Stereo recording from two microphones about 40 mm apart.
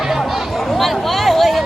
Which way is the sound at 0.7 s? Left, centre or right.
Centre.